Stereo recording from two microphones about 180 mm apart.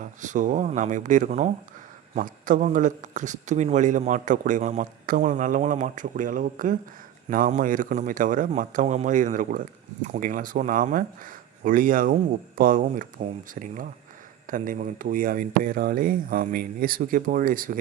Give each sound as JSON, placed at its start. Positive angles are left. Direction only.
{"t": 0.0, "sound": "speech", "side_deg": -45}